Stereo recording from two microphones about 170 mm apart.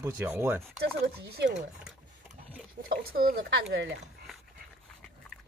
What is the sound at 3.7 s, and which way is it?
Speech, 90° right.